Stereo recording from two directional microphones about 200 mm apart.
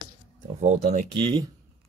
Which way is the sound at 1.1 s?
25° right (ahead or behind).